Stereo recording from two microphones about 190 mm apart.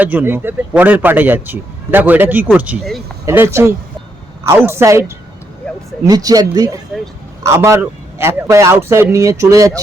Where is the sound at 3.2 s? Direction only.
15° right (ahead or behind).